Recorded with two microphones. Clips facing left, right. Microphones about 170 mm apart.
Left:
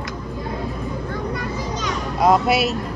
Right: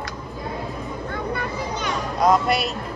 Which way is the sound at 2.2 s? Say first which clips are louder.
Left 3 dB; 5° left (ahead or behind).